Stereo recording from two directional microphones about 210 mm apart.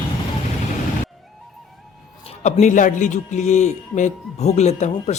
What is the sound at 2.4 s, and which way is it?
A man's voice, 35° left (ahead or behind).